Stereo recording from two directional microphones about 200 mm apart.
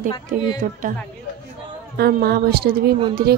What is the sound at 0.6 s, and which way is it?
Speech, 35° right (ahead or behind).